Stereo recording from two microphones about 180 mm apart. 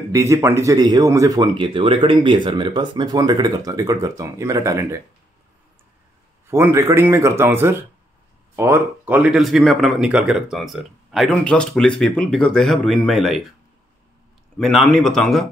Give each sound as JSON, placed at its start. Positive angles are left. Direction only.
{"t": 0.1, "sound": "speech", "side_deg": -15}
{"t": 1.6, "sound": "speech", "side_deg": -30}
{"t": 6.5, "sound": "speech", "side_deg": -15}
{"t": 14.9, "sound": "speech", "side_deg": 0}